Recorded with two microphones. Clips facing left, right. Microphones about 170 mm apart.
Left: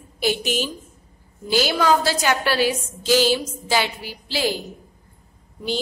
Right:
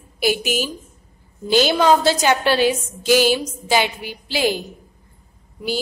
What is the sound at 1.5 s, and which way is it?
A woman's voice, 20° right (ahead or behind).